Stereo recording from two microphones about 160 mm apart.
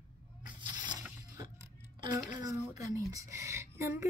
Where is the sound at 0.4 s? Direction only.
25° right (ahead or behind).